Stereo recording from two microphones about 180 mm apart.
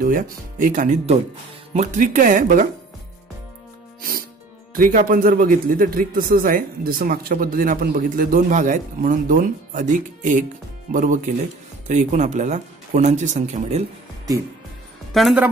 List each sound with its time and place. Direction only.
0.0 s speech: 50° right (ahead or behind)
4.7 s speech: 50° right (ahead or behind)
15.1 s a woman's voice: centre (ahead or behind)